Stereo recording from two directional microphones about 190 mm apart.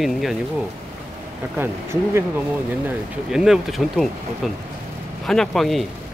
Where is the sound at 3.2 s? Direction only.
5° right (ahead or behind).